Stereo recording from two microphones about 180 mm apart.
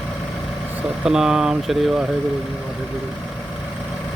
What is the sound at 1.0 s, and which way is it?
Speech, 5° right (ahead or behind).